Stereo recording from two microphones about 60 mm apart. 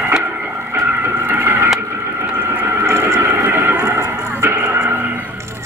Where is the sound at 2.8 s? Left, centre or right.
Right.